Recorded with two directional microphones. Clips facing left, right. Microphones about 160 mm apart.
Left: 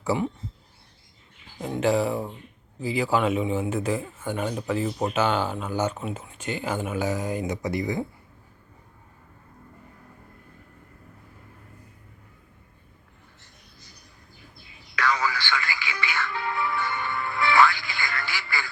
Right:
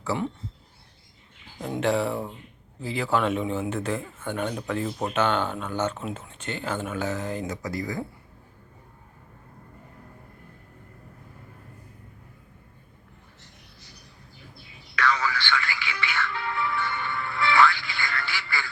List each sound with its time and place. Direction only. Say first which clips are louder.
0.1 s speech: left 1 dB; centre (ahead or behind)
1.8 s speech: left 2 dB; 5° left (ahead or behind); by 8.0 s 20° left (ahead or behind)
14.5 s telephone: right 1 dB; 40° left (ahead or behind)